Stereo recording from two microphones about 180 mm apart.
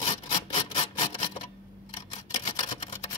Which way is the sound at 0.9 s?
35° left (ahead or behind).